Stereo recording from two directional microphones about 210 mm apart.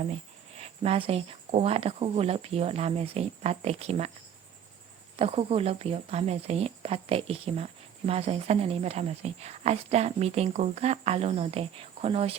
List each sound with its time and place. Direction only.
0.5 s speech: 30° right (ahead or behind)
5.1 s speech: 25° right (ahead or behind)